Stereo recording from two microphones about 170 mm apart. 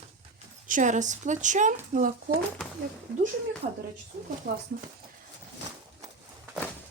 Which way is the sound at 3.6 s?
50° right (ahead or behind).